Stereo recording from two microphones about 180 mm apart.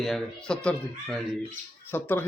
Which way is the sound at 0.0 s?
5° left (ahead or behind).